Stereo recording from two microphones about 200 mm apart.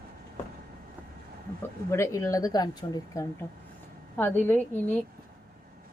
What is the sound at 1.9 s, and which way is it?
A woman's voice, 15° left (ahead or behind).